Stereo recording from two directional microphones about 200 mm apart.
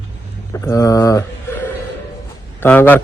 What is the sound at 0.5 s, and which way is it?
Speech, 15° left (ahead or behind).